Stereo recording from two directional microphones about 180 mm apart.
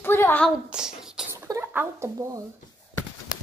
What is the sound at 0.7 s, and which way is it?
Writing, 5° right (ahead or behind).